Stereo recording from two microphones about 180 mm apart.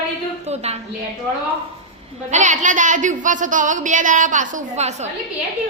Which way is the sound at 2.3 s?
40° right (ahead or behind).